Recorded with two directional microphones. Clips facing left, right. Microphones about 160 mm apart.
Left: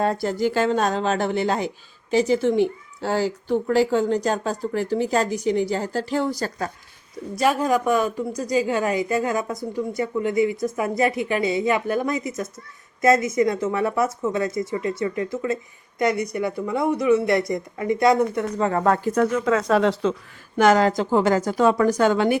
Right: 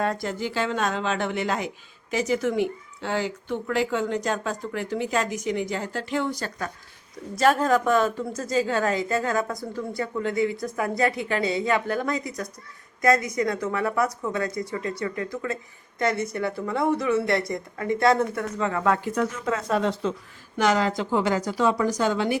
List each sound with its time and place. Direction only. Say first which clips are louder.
0.0 s speech: left 5 dB; 30° left (ahead or behind)
7.4 s a woman's voice: even; 10° left (ahead or behind)
18.5 s speech: left 3 dB; 40° left (ahead or behind)
19.2 s a woman's voice: left 6 dB; 75° left (ahead or behind)
20.6 s a woman's voice: left 5 dB; 50° left (ahead or behind)